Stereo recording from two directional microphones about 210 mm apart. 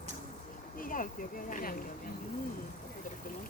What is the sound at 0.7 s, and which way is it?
Speech, 40° left (ahead or behind).